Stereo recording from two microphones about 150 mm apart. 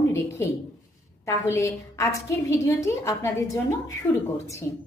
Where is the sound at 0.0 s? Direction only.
20° left (ahead or behind).